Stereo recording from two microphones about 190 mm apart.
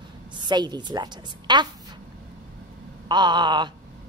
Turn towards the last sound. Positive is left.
turn(degrees=-25)  # may be behind; listen again after turning